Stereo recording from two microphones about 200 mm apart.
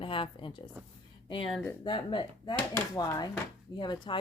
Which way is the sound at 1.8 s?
25° left (ahead or behind).